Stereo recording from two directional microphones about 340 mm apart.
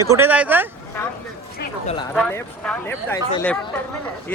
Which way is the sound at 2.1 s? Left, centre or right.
Centre.